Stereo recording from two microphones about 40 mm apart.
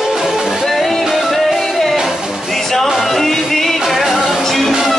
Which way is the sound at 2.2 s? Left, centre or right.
Centre.